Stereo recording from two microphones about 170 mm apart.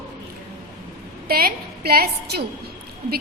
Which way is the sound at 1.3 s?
60° right (ahead or behind).